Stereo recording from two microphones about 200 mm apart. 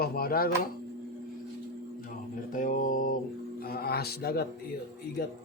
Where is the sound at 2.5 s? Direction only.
40° left (ahead or behind).